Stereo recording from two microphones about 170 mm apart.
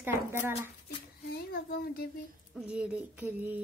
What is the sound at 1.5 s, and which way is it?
Speech, 60° left (ahead or behind).